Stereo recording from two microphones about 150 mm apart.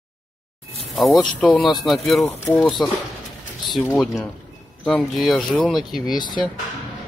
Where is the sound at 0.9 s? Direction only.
Centre (ahead or behind).